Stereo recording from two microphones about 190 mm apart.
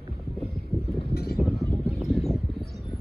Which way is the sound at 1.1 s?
55° left (ahead or behind).